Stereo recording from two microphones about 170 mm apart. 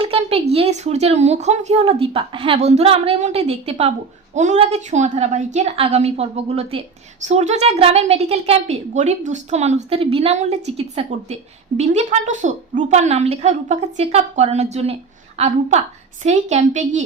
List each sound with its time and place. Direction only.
0.0 s a woman's voice: 35° right (ahead or behind)